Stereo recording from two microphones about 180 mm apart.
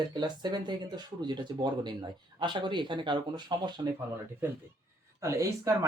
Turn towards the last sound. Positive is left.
turn(degrees=-20)  # may be behind; listen again after turning